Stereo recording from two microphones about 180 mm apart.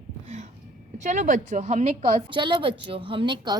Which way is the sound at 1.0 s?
45° right (ahead or behind).